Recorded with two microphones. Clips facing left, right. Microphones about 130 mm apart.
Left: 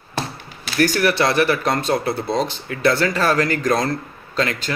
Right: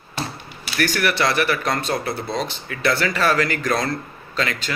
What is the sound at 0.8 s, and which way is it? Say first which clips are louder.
Speech: left 4 dB; 30° left (ahead or behind).